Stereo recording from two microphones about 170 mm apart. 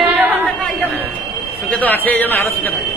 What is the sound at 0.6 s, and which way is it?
A man's voice, 10° left (ahead or behind).